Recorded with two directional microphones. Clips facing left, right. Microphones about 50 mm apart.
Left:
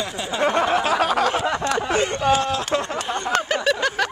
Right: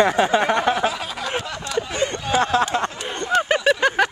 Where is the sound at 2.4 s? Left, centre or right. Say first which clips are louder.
Right 4 dB; right.